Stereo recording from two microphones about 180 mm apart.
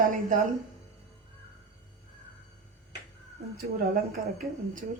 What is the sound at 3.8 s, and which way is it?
Speech, 50° right (ahead or behind).